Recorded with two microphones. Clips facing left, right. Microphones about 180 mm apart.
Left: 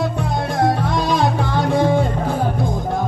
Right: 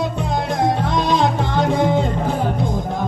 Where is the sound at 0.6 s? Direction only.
20° right (ahead or behind).